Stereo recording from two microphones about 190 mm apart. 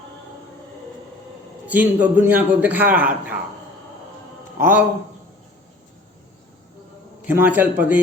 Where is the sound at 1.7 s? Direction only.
10° right (ahead or behind).